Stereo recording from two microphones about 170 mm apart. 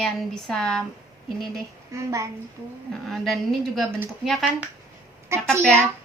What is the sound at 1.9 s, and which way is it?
Speech, 20° right (ahead or behind).